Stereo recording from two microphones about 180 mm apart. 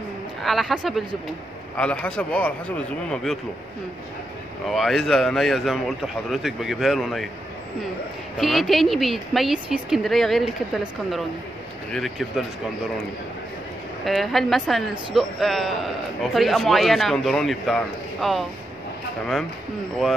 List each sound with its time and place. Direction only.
0.4 s a woman's voice: centre (ahead or behind)
4.6 s a woman's voice: centre (ahead or behind)
8.4 s a woman's voice: centre (ahead or behind)
14.0 s a woman's voice: centre (ahead or behind)